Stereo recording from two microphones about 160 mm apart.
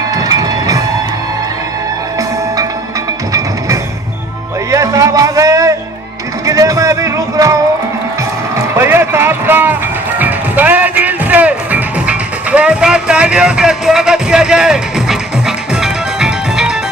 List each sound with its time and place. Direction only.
0.1 s train: 20° right (ahead or behind)
4.7 s music: 20° right (ahead or behind)
8.5 s a sound: 15° right (ahead or behind)
10.2 s music: 10° right (ahead or behind)